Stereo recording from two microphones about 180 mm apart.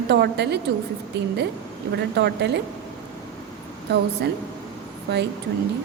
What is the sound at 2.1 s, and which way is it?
Speech, 70° right (ahead or behind).